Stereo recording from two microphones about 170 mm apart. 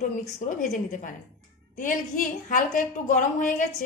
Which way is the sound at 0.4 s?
50° left (ahead or behind).